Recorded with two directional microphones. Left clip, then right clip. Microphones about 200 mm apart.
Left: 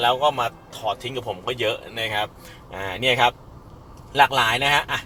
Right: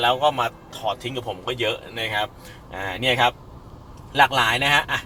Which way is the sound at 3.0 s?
50° left (ahead or behind).